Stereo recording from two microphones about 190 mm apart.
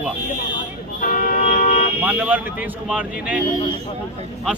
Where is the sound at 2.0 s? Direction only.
10° right (ahead or behind).